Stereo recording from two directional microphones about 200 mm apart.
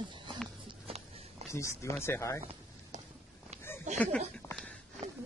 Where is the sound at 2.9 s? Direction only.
35° right (ahead or behind).